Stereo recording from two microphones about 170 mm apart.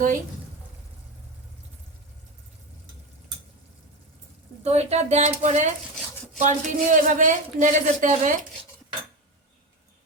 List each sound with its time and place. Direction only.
4.6 s speech: 40° right (ahead or behind)